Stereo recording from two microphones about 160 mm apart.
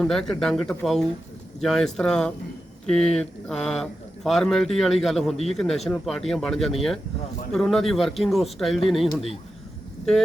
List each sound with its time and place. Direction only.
0.0 s a man's voice: 5° left (ahead or behind)